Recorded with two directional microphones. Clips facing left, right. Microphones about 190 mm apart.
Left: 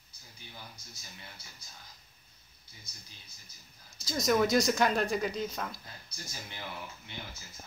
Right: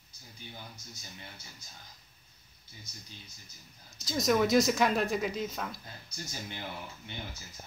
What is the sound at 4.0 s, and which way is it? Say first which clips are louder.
A woman's voice: even; centre (ahead or behind).